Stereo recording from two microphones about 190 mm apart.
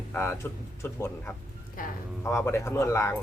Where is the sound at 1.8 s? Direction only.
45° left (ahead or behind).